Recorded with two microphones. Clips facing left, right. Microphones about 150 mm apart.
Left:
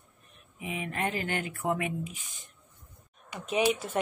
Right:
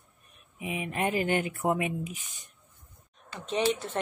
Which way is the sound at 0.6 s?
20° right (ahead or behind).